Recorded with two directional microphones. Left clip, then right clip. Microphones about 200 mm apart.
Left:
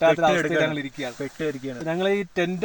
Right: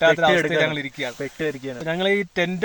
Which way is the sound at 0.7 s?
10° left (ahead or behind).